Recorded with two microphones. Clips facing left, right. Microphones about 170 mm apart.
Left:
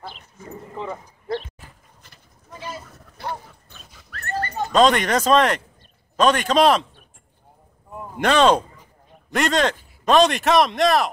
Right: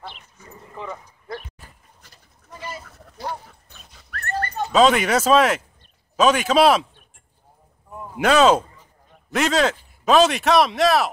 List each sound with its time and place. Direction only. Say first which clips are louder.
0.1 s dog: left 7 dB; 35° left (ahead or behind)
4.6 s speech: even; 5° right (ahead or behind)
8.2 s speech: right 1 dB; 5° right (ahead or behind)